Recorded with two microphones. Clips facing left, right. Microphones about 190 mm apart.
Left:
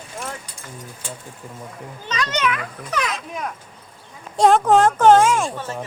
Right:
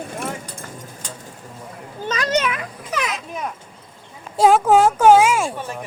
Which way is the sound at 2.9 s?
Centre (ahead or behind).